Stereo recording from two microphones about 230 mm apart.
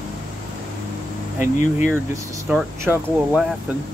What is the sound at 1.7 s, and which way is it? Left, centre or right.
Speech, centre.